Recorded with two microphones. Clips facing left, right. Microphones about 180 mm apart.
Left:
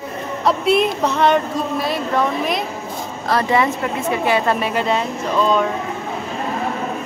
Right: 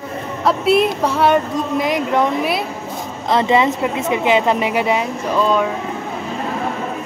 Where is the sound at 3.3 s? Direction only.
20° right (ahead or behind); by 5.7 s 5° right (ahead or behind).